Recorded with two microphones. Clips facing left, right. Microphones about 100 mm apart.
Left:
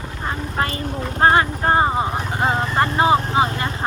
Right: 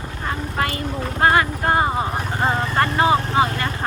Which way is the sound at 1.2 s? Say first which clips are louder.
Left 2 dB; 30° left (ahead or behind).